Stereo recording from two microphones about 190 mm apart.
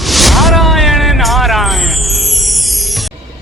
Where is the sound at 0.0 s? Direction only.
Centre (ahead or behind).